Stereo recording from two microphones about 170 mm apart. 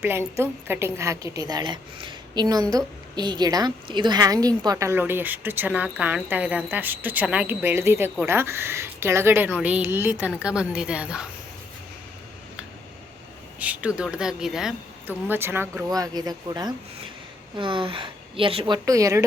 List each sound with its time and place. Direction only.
0.0 s a woman's voice: 15° right (ahead or behind)
13.6 s a woman's voice: 5° right (ahead or behind)
15.9 s a woman's voice: 20° right (ahead or behind)